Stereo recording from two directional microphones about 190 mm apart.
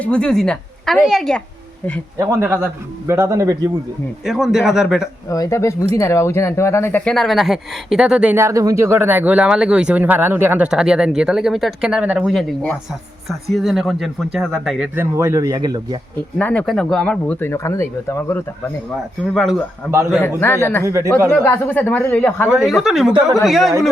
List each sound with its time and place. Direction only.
0.0 s speech: 5° left (ahead or behind)
2.1 s speech: 15° right (ahead or behind)
4.3 s speech: centre (ahead or behind)
5.3 s speech: 15° left (ahead or behind); by 14.8 s centre (ahead or behind)
14.9 s speech: 15° right (ahead or behind)
16.4 s speech: 5° left (ahead or behind)
19.3 s speech: centre (ahead or behind)
20.4 s speech: 10° left (ahead or behind)
20.8 s speech: 15° right (ahead or behind)
21.4 s speech: 10° left (ahead or behind)
22.4 s speech: centre (ahead or behind)